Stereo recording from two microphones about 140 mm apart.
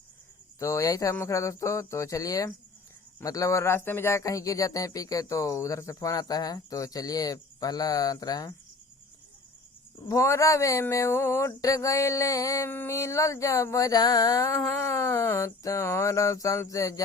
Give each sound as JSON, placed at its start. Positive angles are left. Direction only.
{"t": 0.6, "sound": "speech", "side_deg": 20}
{"t": 10.1, "sound": "speech", "side_deg": 20}